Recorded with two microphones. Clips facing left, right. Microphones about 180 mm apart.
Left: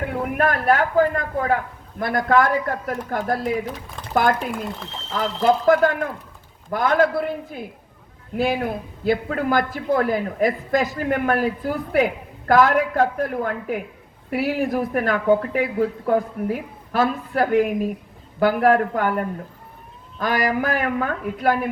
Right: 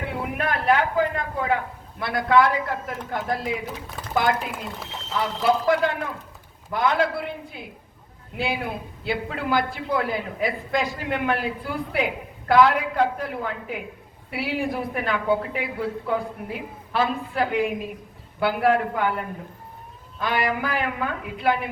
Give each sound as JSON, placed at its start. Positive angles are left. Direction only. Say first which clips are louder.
{"t": 0.0, "sound": "a man's voice", "louder": "left 6 dB", "side_deg": 45}